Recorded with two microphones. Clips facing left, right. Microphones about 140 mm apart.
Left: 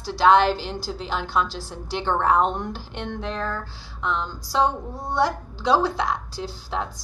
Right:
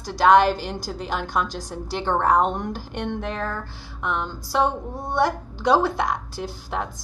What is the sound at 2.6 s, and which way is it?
Speech, 50° right (ahead or behind).